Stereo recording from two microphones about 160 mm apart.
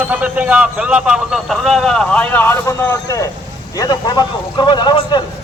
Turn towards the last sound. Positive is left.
turn(degrees=25)  # may be behind; listen again after turning